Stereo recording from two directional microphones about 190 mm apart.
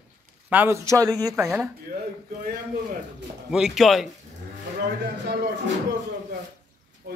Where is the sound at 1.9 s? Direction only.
50° right (ahead or behind).